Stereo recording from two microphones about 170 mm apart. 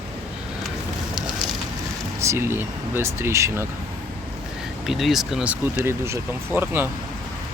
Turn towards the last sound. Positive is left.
turn(degrees=-10)  # may be behind; listen again after turning